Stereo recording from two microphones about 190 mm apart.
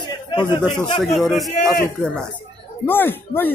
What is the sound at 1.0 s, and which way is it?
Speech, centre (ahead or behind).